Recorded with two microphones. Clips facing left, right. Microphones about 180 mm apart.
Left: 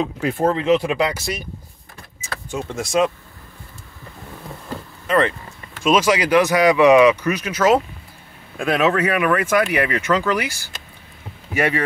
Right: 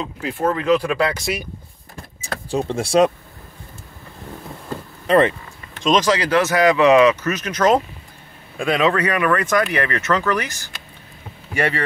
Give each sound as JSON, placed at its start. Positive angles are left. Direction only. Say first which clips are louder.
{"t": 0.0, "sound": "speech", "louder": "left 5 dB", "side_deg": 55}
{"t": 0.4, "sound": "speech", "louder": "even", "side_deg": 25}
{"t": 2.2, "sound": "speech", "louder": "right 5 dB", "side_deg": -30}
{"t": 5.0, "sound": "speech", "louder": "right 3 dB", "side_deg": -25}
{"t": 5.8, "sound": "speech", "louder": "left 1 dB", "side_deg": 10}